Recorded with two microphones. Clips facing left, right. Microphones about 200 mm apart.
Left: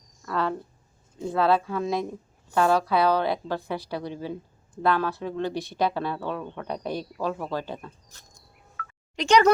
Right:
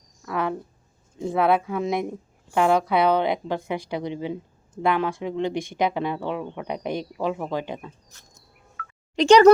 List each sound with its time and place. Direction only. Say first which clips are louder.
0.2 s a sound: right 1 dB; 15° right (ahead or behind)
1.2 s a woman's voice: right 2 dB; 15° right (ahead or behind)
9.1 s a woman's voice: right 6 dB; 30° right (ahead or behind)